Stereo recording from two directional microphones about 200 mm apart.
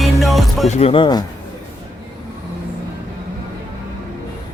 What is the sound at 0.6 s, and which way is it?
Speech, 35° left (ahead or behind).